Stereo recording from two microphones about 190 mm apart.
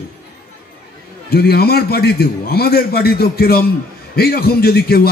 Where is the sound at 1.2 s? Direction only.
55° left (ahead or behind).